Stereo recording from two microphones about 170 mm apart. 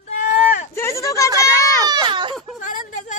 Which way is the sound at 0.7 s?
15° left (ahead or behind).